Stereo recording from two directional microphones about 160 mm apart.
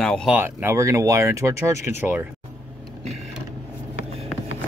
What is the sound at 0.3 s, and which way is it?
Speech, 10° right (ahead or behind).